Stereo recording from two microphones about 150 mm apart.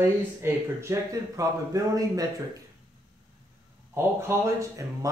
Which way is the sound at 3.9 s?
15° right (ahead or behind).